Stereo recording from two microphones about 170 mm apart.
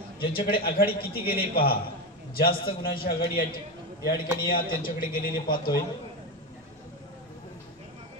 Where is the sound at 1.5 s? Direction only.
60° left (ahead or behind).